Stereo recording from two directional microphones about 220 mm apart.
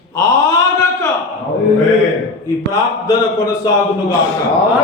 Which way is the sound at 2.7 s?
15° left (ahead or behind).